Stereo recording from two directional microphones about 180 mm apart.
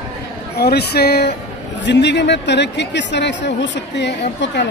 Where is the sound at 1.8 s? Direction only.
75° left (ahead or behind).